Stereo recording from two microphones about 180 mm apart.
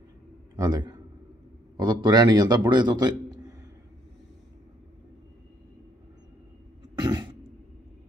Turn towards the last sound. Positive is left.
turn(degrees=-25)  # may be behind; listen again after turning